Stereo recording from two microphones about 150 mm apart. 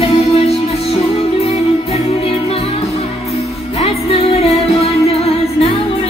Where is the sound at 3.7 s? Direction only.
40° left (ahead or behind).